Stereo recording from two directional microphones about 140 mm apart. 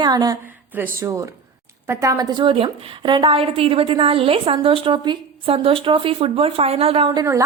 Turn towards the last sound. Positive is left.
turn(degrees=-20)  # may be behind; listen again after turning